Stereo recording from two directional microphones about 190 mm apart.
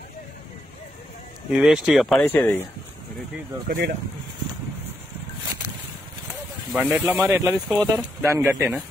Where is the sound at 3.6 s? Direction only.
50° right (ahead or behind).